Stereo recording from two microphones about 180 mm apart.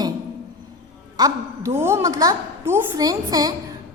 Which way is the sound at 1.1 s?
20° right (ahead or behind).